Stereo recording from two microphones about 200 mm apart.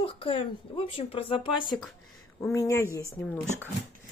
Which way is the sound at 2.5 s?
15° left (ahead or behind).